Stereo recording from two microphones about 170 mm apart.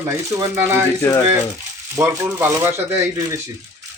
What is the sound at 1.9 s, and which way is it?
Speech, 15° right (ahead or behind).